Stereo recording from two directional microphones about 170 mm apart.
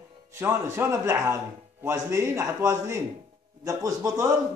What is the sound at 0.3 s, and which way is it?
A man's voice, 15° right (ahead or behind).